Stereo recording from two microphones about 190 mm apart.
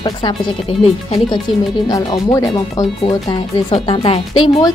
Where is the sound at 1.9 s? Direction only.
20° left (ahead or behind).